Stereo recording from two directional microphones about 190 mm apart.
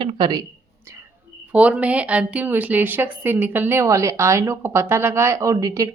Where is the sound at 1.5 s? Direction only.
5° right (ahead or behind).